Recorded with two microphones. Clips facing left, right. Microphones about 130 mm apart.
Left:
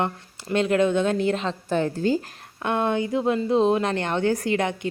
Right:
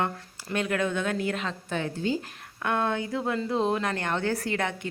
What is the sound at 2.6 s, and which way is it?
Speech, 20° left (ahead or behind).